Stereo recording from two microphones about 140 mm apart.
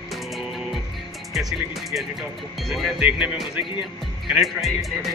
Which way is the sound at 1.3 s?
Centre (ahead or behind).